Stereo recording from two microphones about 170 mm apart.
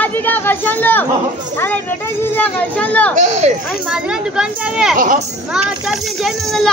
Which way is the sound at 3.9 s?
5° right (ahead or behind).